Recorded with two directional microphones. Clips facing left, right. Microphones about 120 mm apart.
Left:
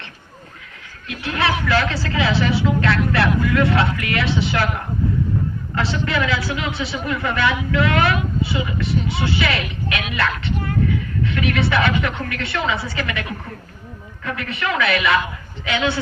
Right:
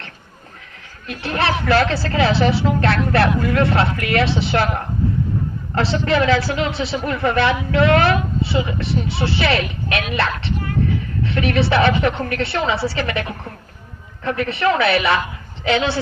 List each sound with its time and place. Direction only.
1.0 s a man's voice: 40° right (ahead or behind)
5.7 s a man's voice: 35° right (ahead or behind)
14.3 s a man's voice: 35° right (ahead or behind)